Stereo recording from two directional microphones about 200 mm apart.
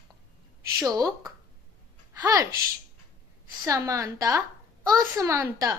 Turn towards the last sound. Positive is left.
turn(degrees=-15)  # may be behind; listen again after turning